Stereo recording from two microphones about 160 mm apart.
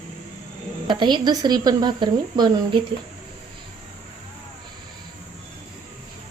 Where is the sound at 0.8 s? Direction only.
30° right (ahead or behind).